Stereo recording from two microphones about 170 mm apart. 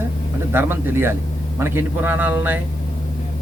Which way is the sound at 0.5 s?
15° right (ahead or behind).